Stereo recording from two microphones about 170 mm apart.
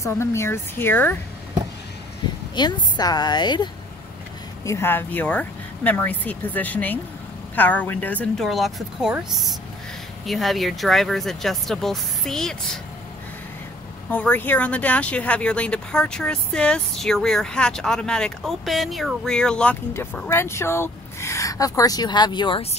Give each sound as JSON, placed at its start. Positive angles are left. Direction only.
{"t": 0.0, "sound": "speech", "side_deg": 15}
{"t": 2.5, "sound": "a woman's voice", "side_deg": 25}
{"t": 4.6, "sound": "speech", "side_deg": 15}
{"t": 14.1, "sound": "speech", "side_deg": 10}